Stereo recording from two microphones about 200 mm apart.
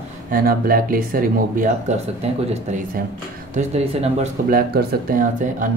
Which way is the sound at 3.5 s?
35° right (ahead or behind).